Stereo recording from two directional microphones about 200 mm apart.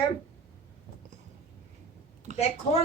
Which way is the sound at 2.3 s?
35° right (ahead or behind).